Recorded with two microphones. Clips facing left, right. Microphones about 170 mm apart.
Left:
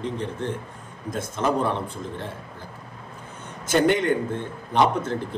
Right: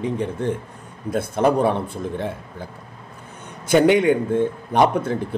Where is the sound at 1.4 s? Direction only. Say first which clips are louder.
Right 6 dB; 55° right (ahead or behind).